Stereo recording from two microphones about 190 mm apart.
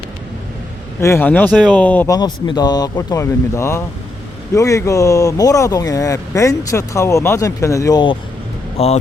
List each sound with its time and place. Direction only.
1.0 s speech: 10° left (ahead or behind)
8.8 s speech: 30° left (ahead or behind)